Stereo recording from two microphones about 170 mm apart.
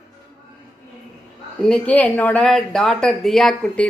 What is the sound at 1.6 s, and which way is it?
Speech, 10° left (ahead or behind).